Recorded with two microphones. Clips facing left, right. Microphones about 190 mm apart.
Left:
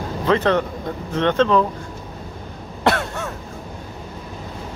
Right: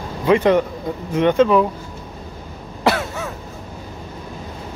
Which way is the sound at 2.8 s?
Centre (ahead or behind).